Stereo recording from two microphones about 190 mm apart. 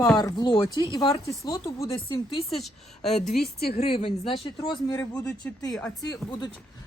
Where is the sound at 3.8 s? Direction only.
30° left (ahead or behind).